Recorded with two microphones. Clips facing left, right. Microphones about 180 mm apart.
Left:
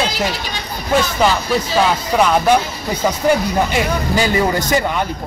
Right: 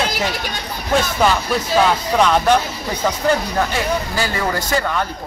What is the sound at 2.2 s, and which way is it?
Speech, 5° left (ahead or behind).